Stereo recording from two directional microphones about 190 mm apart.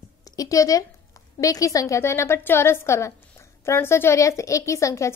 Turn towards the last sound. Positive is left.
turn(degrees=15)  # may be behind; listen again after turning